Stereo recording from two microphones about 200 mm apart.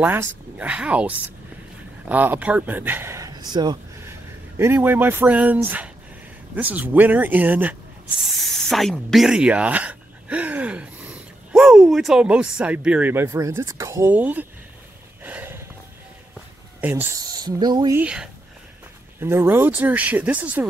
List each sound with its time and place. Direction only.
0.0 s speech: 10° right (ahead or behind)
4.6 s speech: 10° right (ahead or behind)
15.2 s snort: 10° right (ahead or behind)
16.8 s speech: 10° right (ahead or behind)
18.0 s speech: 5° right (ahead or behind)